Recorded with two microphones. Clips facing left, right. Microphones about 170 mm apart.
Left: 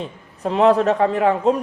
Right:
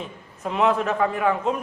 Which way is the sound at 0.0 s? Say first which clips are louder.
Left 5 dB; 35° left (ahead or behind).